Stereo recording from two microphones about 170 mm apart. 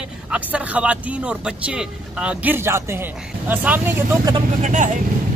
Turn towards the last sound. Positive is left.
turn(degrees=-45)  # may be behind; listen again after turning